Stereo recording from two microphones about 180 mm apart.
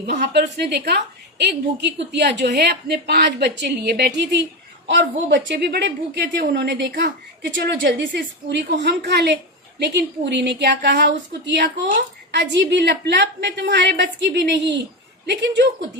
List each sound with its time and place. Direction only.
0.0 s a woman's voice: 65° right (ahead or behind)